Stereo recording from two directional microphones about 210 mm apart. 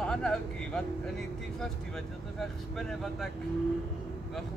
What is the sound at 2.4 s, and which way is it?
Speech, centre (ahead or behind).